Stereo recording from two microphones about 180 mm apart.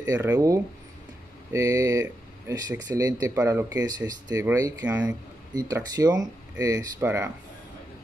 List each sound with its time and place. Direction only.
0.0 s speech: 15° right (ahead or behind)
5.5 s speech: 20° right (ahead or behind)